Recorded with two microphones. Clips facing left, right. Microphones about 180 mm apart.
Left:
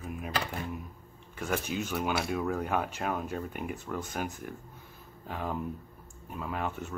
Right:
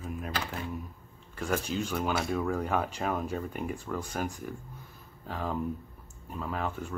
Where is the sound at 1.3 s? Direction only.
5° left (ahead or behind).